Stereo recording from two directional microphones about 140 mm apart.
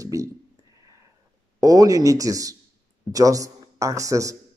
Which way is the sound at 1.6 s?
25° right (ahead or behind).